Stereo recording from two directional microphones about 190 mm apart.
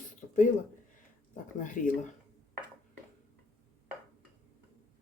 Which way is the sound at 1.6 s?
45° left (ahead or behind).